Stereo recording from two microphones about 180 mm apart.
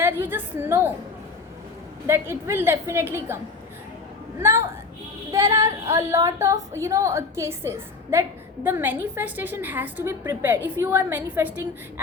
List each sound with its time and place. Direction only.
0.0 s a woman's voice: 10° right (ahead or behind)
2.0 s a woman's voice: 15° right (ahead or behind)
4.4 s a woman's voice: 15° right (ahead or behind)
5.9 s a woman's voice: 15° right (ahead or behind)